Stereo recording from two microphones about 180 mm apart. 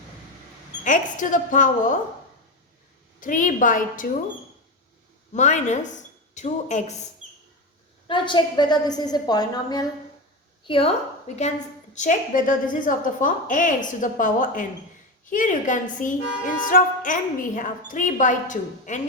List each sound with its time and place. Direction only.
0.9 s a woman's voice: 45° left (ahead or behind)
3.2 s a woman's voice: 45° left (ahead or behind)
5.3 s a woman's voice: 40° left (ahead or behind)
8.0 s a woman's voice: 25° left (ahead or behind); by 18.9 s 45° left (ahead or behind)